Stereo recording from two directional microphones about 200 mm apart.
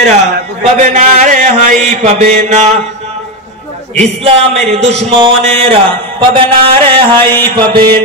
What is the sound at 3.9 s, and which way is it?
A man's voice, 35° right (ahead or behind).